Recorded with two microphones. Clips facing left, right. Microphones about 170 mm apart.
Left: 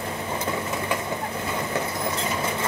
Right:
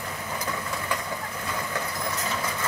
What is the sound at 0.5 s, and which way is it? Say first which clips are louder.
Vehicle: left 4 dB; 20° left (ahead or behind).